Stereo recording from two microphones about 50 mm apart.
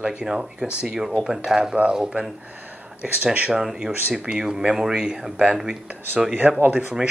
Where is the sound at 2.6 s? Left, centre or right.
Right.